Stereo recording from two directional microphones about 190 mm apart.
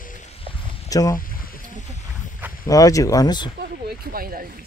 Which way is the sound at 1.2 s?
50° left (ahead or behind).